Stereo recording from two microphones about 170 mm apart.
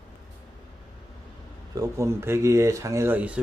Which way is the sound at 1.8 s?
15° right (ahead or behind).